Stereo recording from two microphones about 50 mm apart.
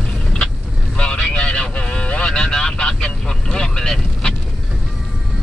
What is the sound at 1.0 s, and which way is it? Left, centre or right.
Vehicle, centre.